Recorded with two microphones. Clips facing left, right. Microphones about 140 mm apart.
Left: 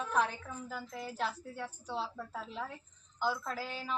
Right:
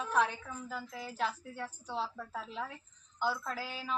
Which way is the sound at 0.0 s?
5° right (ahead or behind).